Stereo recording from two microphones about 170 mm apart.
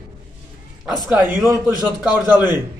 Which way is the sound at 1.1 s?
10° right (ahead or behind).